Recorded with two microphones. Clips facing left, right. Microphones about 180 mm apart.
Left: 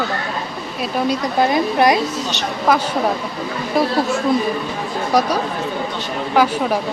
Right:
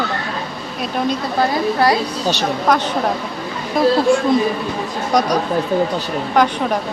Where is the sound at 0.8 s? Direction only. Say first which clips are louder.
Even; 5° left (ahead or behind).